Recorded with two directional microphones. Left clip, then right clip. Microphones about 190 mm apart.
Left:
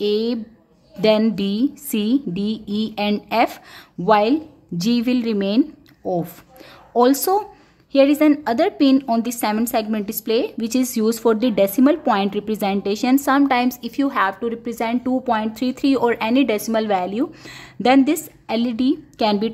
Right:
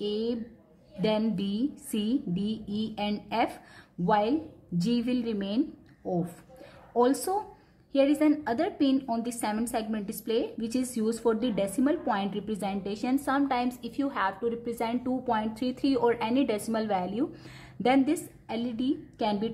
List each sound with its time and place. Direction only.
0.0 s a woman's voice: 35° left (ahead or behind)
6.9 s a woman's voice: 35° left (ahead or behind)